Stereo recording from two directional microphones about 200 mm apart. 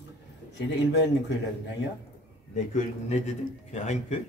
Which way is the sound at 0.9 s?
60° left (ahead or behind).